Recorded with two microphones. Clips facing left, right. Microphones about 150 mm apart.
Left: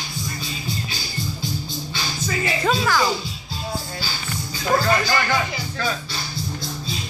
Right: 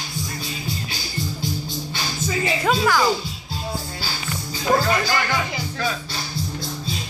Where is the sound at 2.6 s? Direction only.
10° right (ahead or behind).